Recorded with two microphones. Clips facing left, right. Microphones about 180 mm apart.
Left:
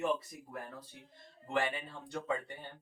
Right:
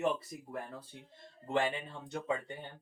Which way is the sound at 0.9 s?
25° right (ahead or behind).